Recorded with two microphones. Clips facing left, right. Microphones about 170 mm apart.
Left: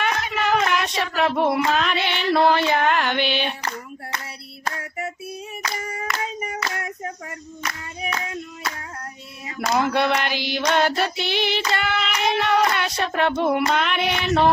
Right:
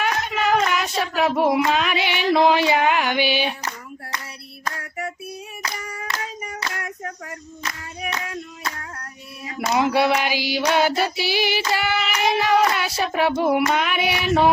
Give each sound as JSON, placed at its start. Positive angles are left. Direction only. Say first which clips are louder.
{"t": 0.0, "sound": "speech", "louder": "right 1 dB", "side_deg": 0}
{"t": 6.1, "sound": "clapping", "louder": "left 1 dB", "side_deg": -30}
{"t": 9.6, "sound": "female singing", "louder": "right 2 dB", "side_deg": -5}